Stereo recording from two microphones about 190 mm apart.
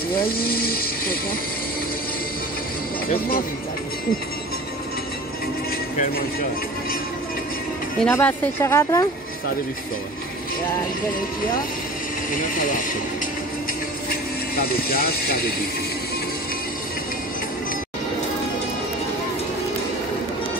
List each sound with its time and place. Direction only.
0.1 s speech: 50° left (ahead or behind)
8.0 s speech: 10° left (ahead or behind)
12.4 s speech: 45° left (ahead or behind)
14.5 s speech: 50° left (ahead or behind)